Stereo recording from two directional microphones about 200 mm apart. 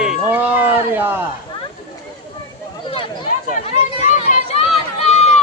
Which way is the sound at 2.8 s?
25° left (ahead or behind).